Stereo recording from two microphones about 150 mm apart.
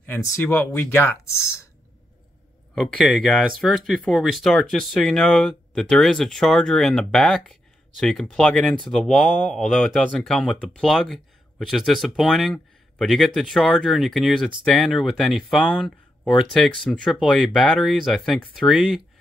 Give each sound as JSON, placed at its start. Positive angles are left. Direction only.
{"t": 0.0, "sound": "speech", "side_deg": 15}
{"t": 2.7, "sound": "speech", "side_deg": 5}